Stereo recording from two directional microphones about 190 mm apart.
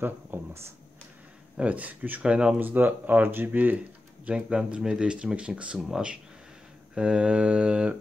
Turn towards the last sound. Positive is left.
turn(degrees=-5)  # may be behind; listen again after turning